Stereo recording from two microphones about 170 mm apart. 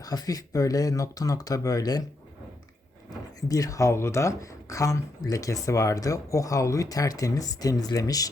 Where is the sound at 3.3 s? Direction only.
20° left (ahead or behind).